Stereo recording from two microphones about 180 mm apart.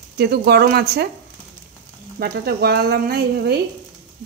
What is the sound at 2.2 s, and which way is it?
A woman's voice, 65° right (ahead or behind).